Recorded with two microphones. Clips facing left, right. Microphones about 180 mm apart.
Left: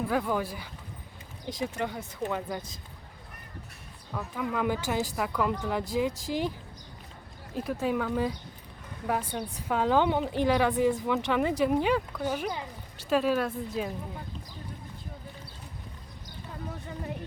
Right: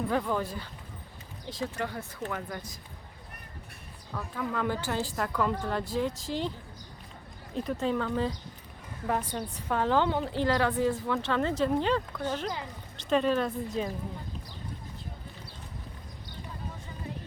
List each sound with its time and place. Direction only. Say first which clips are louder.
0.1 s a woman's voice: left 1 dB; 5° left (ahead or behind)
4.1 s a woman's voice: left 1 dB; 15° left (ahead or behind)
7.5 s a woman's voice: even; 5° left (ahead or behind)